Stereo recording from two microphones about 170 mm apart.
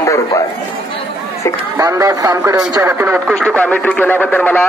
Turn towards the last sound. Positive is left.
turn(degrees=10)  # may be behind; listen again after turning